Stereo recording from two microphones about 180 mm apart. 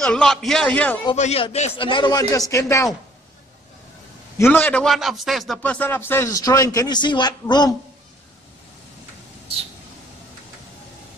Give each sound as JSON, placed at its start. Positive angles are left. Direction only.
{"t": 0.0, "sound": "a man's voice", "side_deg": 5}
{"t": 1.1, "sound": "a man's voice", "side_deg": 35}
{"t": 4.4, "sound": "a man's voice", "side_deg": 10}